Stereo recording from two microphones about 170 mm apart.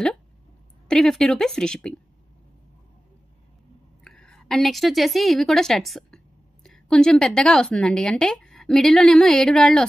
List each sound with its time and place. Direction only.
0.8 s a woman's voice: 5° left (ahead or behind)
4.0 s a woman's voice: 5° left (ahead or behind)